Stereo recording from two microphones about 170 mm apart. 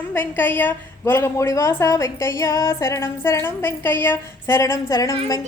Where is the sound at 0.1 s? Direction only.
10° left (ahead or behind).